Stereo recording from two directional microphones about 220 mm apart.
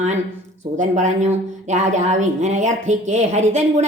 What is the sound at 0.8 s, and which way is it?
A woman's voice, 35° right (ahead or behind).